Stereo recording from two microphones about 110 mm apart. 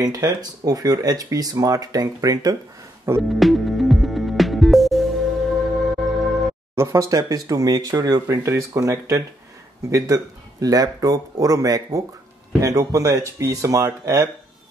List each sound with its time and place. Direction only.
0.0 s speech: 35° right (ahead or behind)
3.2 s music: centre (ahead or behind)
6.7 s speech: 25° right (ahead or behind)